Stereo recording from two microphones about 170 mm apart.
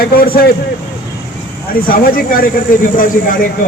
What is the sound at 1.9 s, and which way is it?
A man's voice, 60° left (ahead or behind).